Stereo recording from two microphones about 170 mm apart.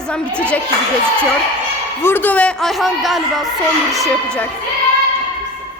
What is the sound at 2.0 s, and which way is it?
A man's voice, 10° left (ahead or behind).